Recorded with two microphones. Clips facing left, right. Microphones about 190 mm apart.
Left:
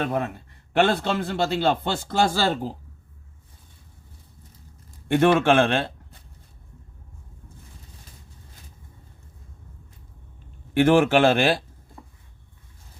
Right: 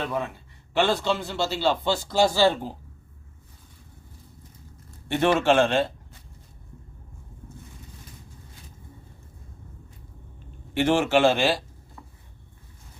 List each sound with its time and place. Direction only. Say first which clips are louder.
0.0 s a man's voice: left 3 dB; 55° left (ahead or behind)
5.0 s a man's voice: left 3 dB; 50° left (ahead or behind)
10.8 s a man's voice: left 4 dB; 55° left (ahead or behind)